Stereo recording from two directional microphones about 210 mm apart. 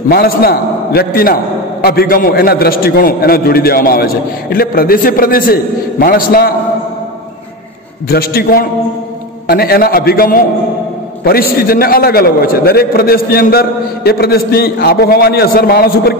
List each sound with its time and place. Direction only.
0.1 s a man's voice: 45° left (ahead or behind)
8.1 s a man's voice: 45° left (ahead or behind)